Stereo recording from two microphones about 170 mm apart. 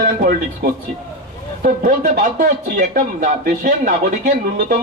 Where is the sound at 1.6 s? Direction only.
55° right (ahead or behind).